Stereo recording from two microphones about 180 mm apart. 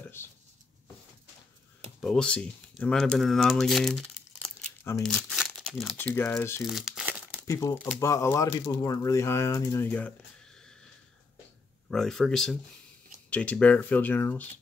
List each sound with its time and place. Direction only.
0.2 s a sound: 15° left (ahead or behind)
2.0 s speech: 5° left (ahead or behind)
5.0 s crumpling: centre (ahead or behind)
5.9 s speech: 10° left (ahead or behind)
6.6 s crumpling: centre (ahead or behind)
7.4 s speech: 15° left (ahead or behind)
11.9 s speech: centre (ahead or behind)